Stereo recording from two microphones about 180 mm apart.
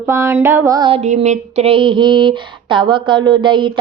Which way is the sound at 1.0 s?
40° right (ahead or behind).